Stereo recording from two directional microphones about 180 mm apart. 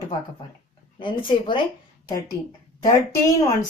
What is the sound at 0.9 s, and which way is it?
Speech, 25° left (ahead or behind).